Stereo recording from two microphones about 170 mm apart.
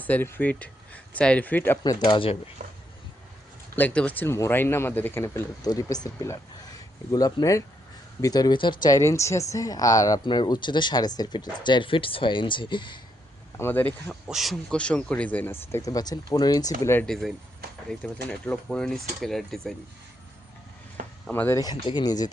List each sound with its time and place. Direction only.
0.0 s speech: 10° left (ahead or behind)
1.8 s speech: 25° left (ahead or behind)
2.6 s speech: 50° right (ahead or behind)
3.8 s speech: 10° left (ahead or behind); by 13.0 s 30° left (ahead or behind)
13.6 s speech: 10° left (ahead or behind)
14.1 s speech: centre (ahead or behind)
17.1 s speech: centre (ahead or behind)
21.2 s speech: 10° left (ahead or behind)